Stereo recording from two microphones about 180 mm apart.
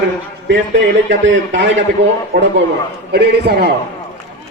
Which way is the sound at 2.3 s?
55° right (ahead or behind).